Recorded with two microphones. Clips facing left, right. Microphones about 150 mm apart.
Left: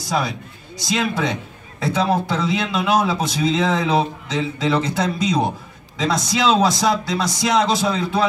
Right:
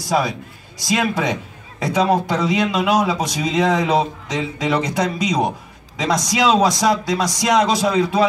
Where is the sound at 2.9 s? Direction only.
25° left (ahead or behind).